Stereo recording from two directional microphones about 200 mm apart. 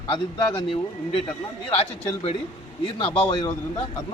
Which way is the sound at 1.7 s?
30° left (ahead or behind).